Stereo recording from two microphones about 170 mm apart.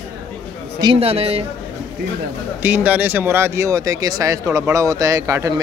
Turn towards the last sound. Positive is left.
turn(degrees=-20)  # may be behind; listen again after turning